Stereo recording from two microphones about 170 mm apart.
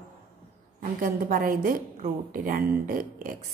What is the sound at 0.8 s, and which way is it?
A woman's voice, 55° right (ahead or behind).